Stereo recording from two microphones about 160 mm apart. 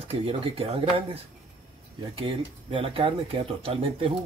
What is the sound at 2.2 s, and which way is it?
Speech, 35° right (ahead or behind).